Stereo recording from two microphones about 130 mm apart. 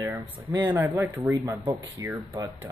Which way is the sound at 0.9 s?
25° right (ahead or behind).